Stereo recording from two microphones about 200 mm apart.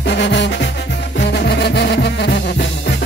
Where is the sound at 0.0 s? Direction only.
60° left (ahead or behind).